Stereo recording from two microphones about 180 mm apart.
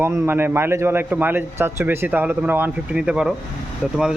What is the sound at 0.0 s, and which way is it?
A man's voice, 10° right (ahead or behind).